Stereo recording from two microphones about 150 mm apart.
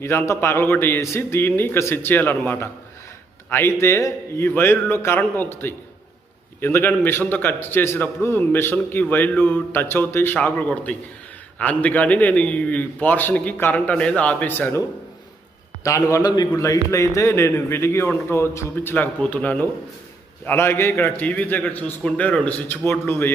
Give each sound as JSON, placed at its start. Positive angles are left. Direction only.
{"t": 0.0, "sound": "a man's voice", "side_deg": 15}